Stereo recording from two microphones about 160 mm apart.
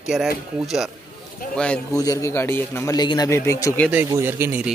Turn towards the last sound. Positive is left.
turn(degrees=-15)  # may be behind; listen again after turning